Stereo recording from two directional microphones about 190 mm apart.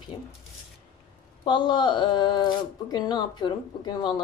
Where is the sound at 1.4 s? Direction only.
25° left (ahead or behind).